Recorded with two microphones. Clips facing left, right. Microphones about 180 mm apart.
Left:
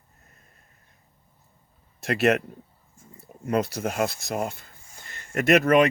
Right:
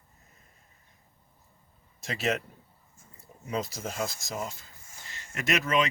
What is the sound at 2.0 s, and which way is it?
Speech, 65° left (ahead or behind).